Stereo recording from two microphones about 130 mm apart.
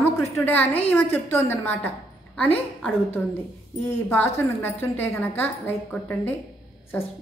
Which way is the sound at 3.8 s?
15° left (ahead or behind).